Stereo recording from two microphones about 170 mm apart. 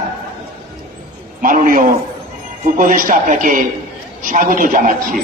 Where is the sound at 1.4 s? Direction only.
55° right (ahead or behind).